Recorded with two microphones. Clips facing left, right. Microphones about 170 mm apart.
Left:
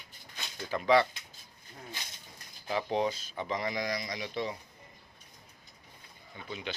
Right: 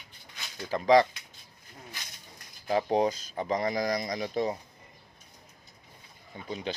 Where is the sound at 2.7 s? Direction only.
40° right (ahead or behind).